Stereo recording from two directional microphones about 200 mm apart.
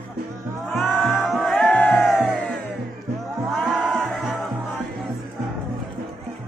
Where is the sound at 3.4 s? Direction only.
Centre (ahead or behind).